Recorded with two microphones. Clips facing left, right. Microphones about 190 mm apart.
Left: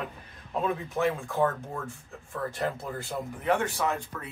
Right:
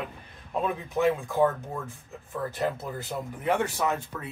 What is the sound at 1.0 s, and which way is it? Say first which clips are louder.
Speech: right 4 dB; 15° right (ahead or behind).